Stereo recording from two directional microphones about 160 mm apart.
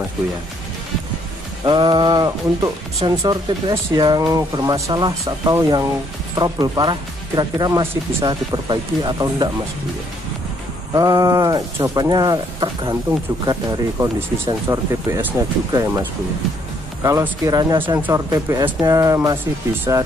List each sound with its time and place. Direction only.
1.6 s speech: 30° right (ahead or behind)
10.9 s speech: 25° right (ahead or behind)